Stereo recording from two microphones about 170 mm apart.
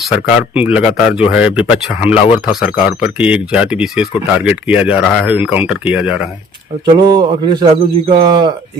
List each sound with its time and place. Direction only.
0.1 s speech: 5° right (ahead or behind)
6.8 s speech: 25° right (ahead or behind)